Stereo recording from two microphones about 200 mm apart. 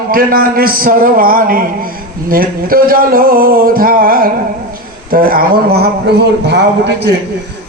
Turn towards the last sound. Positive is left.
turn(degrees=-55)  # may be behind; listen again after turning